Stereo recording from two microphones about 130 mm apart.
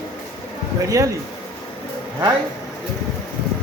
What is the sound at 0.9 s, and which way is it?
Speech, 25° right (ahead or behind).